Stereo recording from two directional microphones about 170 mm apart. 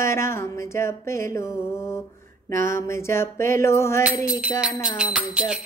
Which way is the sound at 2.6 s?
15° left (ahead or behind).